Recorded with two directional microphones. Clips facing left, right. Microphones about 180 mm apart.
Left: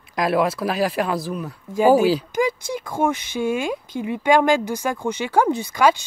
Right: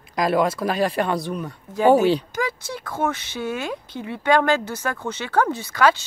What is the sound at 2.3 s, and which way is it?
Speech, 15° left (ahead or behind).